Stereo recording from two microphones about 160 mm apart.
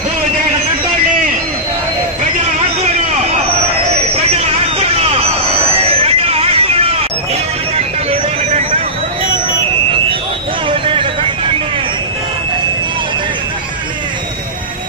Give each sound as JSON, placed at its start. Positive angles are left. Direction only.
{"t": 4.8, "sound": "vehicle", "side_deg": -40}
{"t": 5.8, "sound": "hubbub", "side_deg": -40}
{"t": 7.8, "sound": "vehicle", "side_deg": -40}
{"t": 10.7, "sound": "a sound", "side_deg": -35}